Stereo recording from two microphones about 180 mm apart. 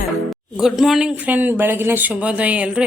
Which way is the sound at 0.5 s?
Centre (ahead or behind).